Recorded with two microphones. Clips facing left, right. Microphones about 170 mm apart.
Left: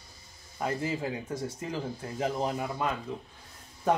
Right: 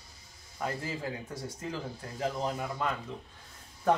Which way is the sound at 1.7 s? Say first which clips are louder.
Left 4 dB; 20° left (ahead or behind).